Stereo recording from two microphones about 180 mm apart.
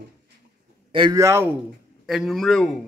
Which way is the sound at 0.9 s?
25° right (ahead or behind).